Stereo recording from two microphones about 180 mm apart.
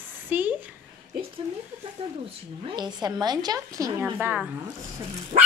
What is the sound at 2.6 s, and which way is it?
Speech, 25° right (ahead or behind).